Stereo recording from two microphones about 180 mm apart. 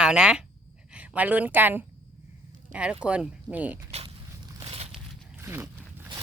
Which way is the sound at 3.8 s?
35° right (ahead or behind).